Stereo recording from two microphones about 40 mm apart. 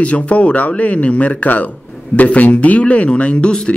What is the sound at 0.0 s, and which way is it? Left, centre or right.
Speech, left.